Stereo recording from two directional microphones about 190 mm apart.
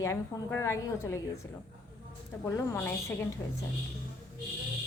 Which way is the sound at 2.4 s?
15° left (ahead or behind).